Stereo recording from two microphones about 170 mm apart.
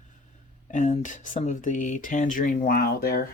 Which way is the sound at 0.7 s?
50° left (ahead or behind).